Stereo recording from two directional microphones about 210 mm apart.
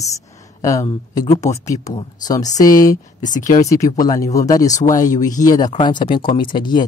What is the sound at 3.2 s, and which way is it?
Speech, 35° left (ahead or behind).